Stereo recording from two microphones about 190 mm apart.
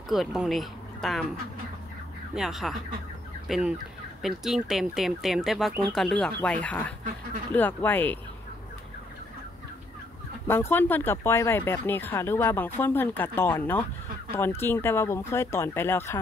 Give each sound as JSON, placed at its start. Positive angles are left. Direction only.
{"t": 0.1, "sound": "speech", "side_deg": 0}
{"t": 2.3, "sound": "speech", "side_deg": 0}
{"t": 10.4, "sound": "speech", "side_deg": 10}